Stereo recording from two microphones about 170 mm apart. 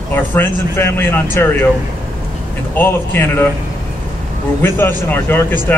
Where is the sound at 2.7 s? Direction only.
15° left (ahead or behind).